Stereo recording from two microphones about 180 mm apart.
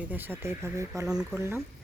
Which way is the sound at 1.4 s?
15° right (ahead or behind).